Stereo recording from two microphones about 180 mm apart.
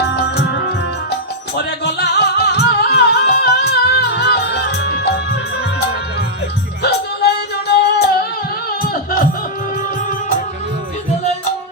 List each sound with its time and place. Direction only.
0.1 s music: 65° left (ahead or behind)
1.5 s music: 65° left (ahead or behind)
6.8 s music: 65° left (ahead or behind)
8.8 s music: 50° left (ahead or behind)